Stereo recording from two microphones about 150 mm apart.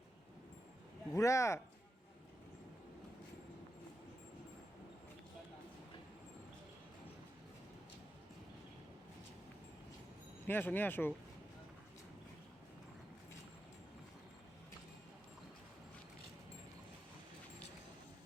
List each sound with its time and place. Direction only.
1.1 s speech: 20° left (ahead or behind)
10.4 s speech: 15° left (ahead or behind)